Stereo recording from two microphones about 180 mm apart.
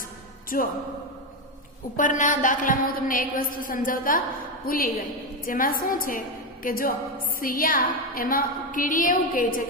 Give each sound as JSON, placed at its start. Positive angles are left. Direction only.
{"t": 0.5, "sound": "a woman's voice", "side_deg": 50}
{"t": 2.0, "sound": "a woman's voice", "side_deg": 45}